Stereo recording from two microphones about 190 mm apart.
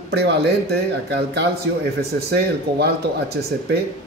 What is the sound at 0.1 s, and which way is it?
Speech, 60° right (ahead or behind).